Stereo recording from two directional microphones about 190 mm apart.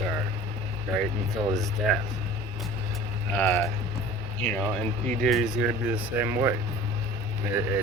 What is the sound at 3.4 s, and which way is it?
Speech, 10° left (ahead or behind).